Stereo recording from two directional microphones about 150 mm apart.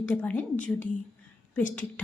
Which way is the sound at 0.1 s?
10° left (ahead or behind).